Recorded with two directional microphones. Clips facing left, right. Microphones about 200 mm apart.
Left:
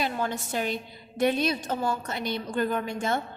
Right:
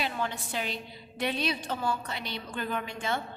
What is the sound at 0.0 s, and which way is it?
A woman's voice, 45° left (ahead or behind).